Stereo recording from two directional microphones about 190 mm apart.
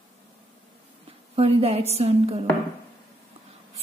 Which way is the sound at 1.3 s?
30° right (ahead or behind).